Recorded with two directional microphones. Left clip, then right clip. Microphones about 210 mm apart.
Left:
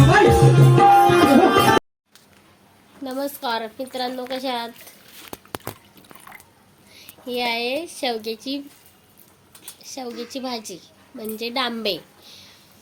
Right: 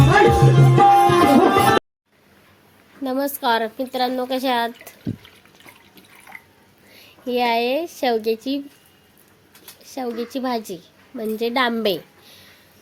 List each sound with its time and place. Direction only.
0.3 s tabla: centre (ahead or behind)
3.0 s a sound: 35° right (ahead or behind)
3.4 s a woman's voice: 40° right (ahead or behind)
6.9 s a woman's voice: 35° right (ahead or behind)
9.8 s a woman's voice: 30° right (ahead or behind)